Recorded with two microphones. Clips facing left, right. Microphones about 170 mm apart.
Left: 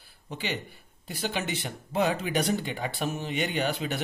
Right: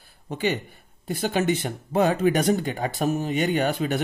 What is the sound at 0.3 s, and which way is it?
Speech, 45° right (ahead or behind).